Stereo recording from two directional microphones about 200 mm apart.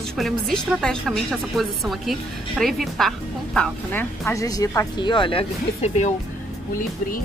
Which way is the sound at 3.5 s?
10° left (ahead or behind).